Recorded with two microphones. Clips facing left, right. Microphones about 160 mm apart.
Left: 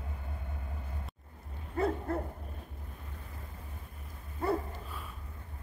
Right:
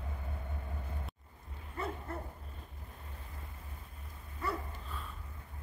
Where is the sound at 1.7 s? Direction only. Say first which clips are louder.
Left 9 dB; 65° left (ahead or behind).